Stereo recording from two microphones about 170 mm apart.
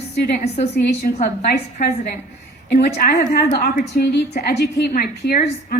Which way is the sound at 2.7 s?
60° left (ahead or behind).